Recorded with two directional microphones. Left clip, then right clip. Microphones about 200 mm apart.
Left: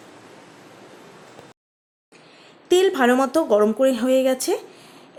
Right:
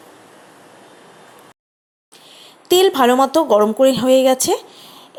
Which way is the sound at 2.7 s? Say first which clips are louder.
Right 4 dB; 15° right (ahead or behind).